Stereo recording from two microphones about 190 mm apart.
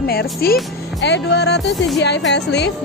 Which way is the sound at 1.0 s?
65° left (ahead or behind).